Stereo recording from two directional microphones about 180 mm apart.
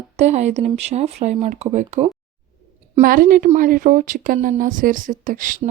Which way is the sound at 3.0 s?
50° right (ahead or behind).